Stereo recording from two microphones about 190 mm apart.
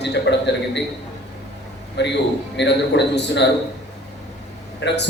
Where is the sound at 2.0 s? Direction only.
65° left (ahead or behind).